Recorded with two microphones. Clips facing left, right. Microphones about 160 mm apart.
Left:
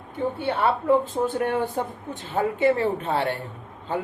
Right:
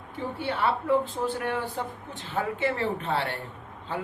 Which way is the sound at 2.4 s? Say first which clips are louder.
Left 5 dB; 40° left (ahead or behind).